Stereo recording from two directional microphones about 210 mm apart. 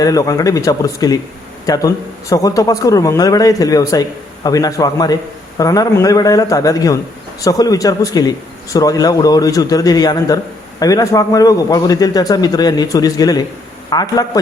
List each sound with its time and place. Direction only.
0.0 s speech: 15° left (ahead or behind)